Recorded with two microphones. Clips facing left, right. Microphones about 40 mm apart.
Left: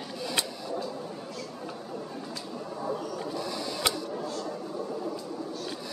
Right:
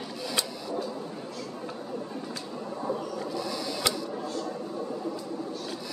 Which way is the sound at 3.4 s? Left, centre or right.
Left.